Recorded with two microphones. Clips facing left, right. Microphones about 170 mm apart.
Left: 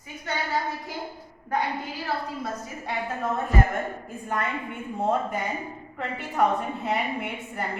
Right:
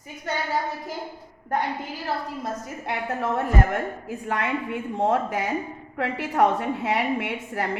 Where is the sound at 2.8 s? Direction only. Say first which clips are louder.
Right 2 dB; 75° right (ahead or behind).